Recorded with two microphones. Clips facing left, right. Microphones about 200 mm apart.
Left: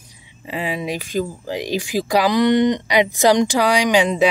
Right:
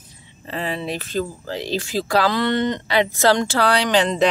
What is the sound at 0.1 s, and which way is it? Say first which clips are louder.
Speech: left 2 dB; 10° left (ahead or behind).